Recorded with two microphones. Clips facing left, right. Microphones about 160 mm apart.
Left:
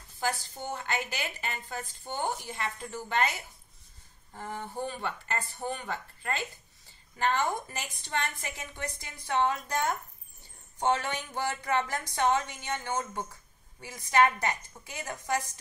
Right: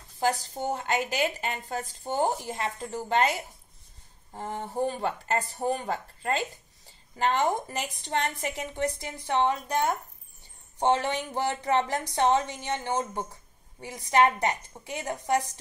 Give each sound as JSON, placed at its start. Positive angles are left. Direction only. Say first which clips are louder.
{"t": 0.3, "sound": "speech", "louder": "right 7 dB", "side_deg": -35}
{"t": 7.2, "sound": "speech", "louder": "right 3 dB", "side_deg": -30}